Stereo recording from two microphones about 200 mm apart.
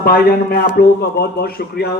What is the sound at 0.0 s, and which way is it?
Speech, 50° left (ahead or behind).